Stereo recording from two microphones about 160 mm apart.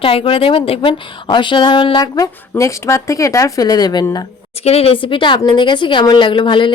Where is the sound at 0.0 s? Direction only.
35° left (ahead or behind).